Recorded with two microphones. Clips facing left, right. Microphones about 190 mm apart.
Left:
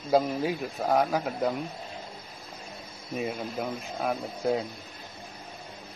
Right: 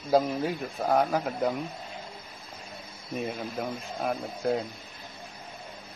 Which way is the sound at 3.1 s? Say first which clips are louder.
Left 1 dB; centre (ahead or behind).